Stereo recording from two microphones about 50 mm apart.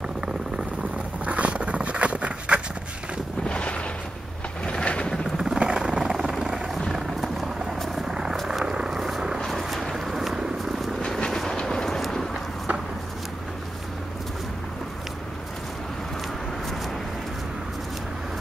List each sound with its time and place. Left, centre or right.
1.2 s dog: right
3.4 s a sound: centre
5.4 s vehicle: centre
6.4 s helicopter: centre
8.1 s helicopter: centre
8.5 s vehicle: centre
9.5 s a sound: centre
11.6 s vehicle: centre
12.0 s a sound: centre